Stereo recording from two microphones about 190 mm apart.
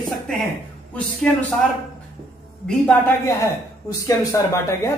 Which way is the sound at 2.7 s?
10° left (ahead or behind).